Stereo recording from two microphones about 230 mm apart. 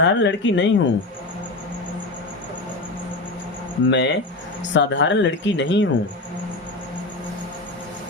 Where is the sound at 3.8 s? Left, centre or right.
Left.